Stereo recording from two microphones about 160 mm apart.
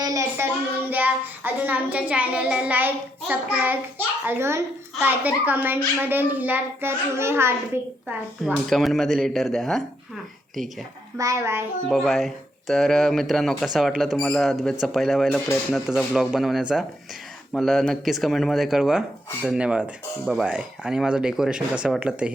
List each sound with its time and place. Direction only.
0.0 s child singing: 20° right (ahead or behind)
8.6 s speech: centre (ahead or behind)
11.2 s child singing: 20° right (ahead or behind)
11.9 s speech: centre (ahead or behind)
21.8 s child singing: 5° right (ahead or behind)